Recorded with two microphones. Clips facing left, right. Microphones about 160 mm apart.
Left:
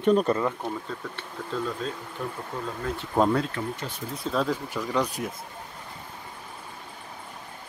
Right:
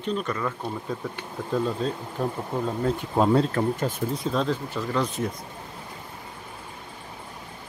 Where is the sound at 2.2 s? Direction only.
35° right (ahead or behind).